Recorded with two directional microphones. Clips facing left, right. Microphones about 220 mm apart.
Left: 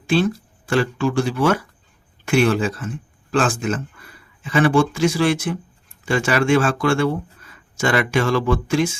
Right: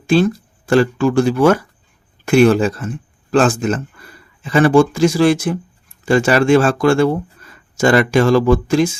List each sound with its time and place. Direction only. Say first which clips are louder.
0.7 s speech: right 6 dB; 45° right (ahead or behind)